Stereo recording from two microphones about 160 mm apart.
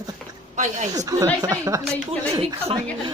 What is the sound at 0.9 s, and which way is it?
Speech, 20° right (ahead or behind).